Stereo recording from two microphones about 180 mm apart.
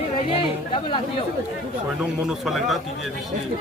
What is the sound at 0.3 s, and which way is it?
Speech, 30° left (ahead or behind).